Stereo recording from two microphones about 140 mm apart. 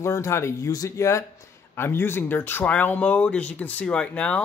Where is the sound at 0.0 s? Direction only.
20° left (ahead or behind).